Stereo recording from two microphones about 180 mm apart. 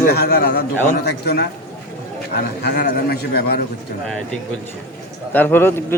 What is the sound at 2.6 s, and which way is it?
Speech, 60° left (ahead or behind).